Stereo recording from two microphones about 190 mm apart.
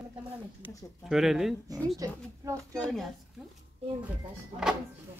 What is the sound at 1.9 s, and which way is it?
Speech, 15° right (ahead or behind).